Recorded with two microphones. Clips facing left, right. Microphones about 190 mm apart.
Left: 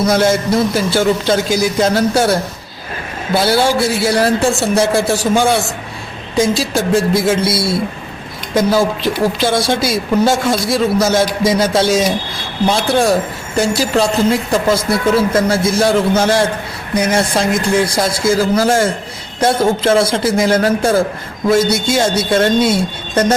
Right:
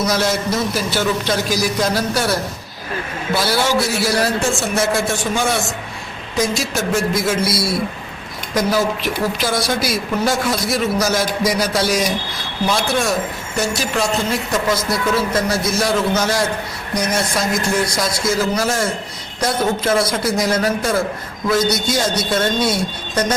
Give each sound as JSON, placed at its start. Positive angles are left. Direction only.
{"t": 0.0, "sound": "a man's voice", "side_deg": 25}